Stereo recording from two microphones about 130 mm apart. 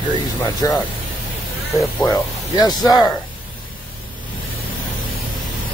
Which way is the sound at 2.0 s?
30° left (ahead or behind).